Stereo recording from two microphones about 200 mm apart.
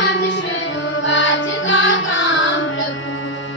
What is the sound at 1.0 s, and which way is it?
Music, 70° left (ahead or behind).